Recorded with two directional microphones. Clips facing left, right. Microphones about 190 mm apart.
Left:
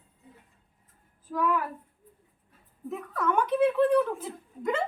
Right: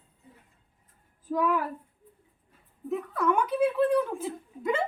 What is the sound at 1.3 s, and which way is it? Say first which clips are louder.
Speech: right 1 dB; 15° right (ahead or behind).